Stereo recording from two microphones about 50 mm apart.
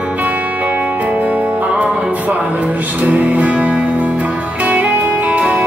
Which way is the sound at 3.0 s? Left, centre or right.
Right.